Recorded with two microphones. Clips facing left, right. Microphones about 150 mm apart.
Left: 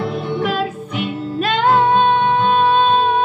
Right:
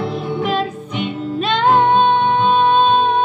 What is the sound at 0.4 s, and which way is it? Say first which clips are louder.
Music: right 2 dB; 5° left (ahead or behind).